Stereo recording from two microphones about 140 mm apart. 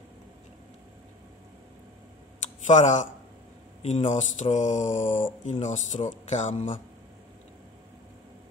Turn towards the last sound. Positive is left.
turn(degrees=55)  # may be behind; listen again after turning